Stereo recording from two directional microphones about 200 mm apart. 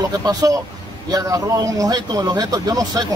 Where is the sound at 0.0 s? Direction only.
20° right (ahead or behind).